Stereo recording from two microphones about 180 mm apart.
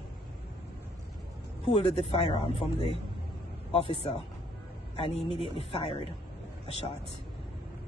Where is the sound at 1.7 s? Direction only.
30° left (ahead or behind).